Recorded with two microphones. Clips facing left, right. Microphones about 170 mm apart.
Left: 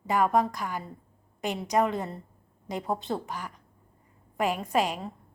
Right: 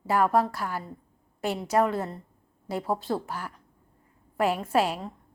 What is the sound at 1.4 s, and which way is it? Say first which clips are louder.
Speech: right 2 dB; 15° left (ahead or behind).